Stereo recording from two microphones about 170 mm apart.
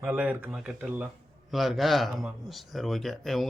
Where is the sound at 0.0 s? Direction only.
5° right (ahead or behind).